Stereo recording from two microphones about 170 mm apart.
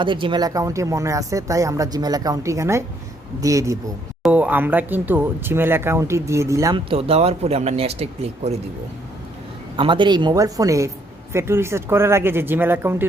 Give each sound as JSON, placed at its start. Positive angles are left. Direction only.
{"t": 0.0, "sound": "a man's voice", "side_deg": -30}
{"t": 6.9, "sound": "speech", "side_deg": -35}
{"t": 9.7, "sound": "a man's voice", "side_deg": -30}